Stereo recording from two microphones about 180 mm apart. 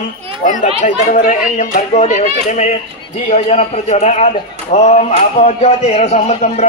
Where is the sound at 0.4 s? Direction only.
45° left (ahead or behind).